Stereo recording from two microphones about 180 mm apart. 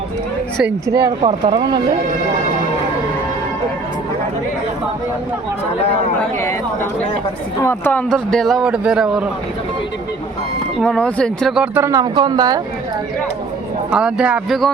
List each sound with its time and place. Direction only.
1.0 s speech: 30° right (ahead or behind)
7.6 s a woman's voice: 10° left (ahead or behind)
8.1 s a man's voice: centre (ahead or behind)
10.8 s speech: 5° left (ahead or behind); by 12.6 s 20° right (ahead or behind)
13.9 s a man's voice: 5° right (ahead or behind)